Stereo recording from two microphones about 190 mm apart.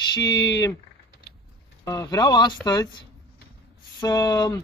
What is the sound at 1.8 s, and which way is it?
Speech, 20° left (ahead or behind).